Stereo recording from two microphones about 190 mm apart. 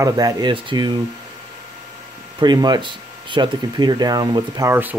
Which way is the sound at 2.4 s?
20° right (ahead or behind).